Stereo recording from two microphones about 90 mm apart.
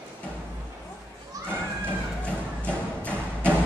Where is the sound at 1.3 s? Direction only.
40° right (ahead or behind).